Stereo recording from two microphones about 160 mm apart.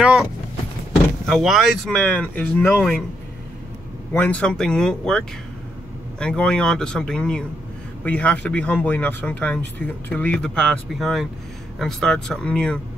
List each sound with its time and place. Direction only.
0.0 s speech: 5° right (ahead or behind)
4.1 s speech: 10° left (ahead or behind)